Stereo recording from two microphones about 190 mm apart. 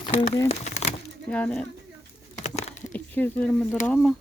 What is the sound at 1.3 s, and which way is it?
Speech, 5° left (ahead or behind).